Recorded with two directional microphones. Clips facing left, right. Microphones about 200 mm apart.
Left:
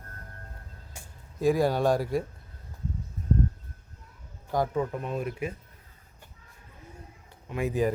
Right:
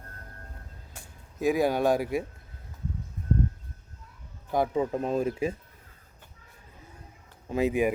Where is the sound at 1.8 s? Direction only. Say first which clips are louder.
Even; 5° right (ahead or behind).